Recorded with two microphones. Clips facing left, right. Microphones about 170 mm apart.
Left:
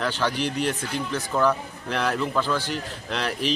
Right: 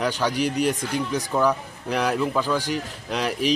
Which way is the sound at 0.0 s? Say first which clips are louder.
Right 2 dB; 10° right (ahead or behind).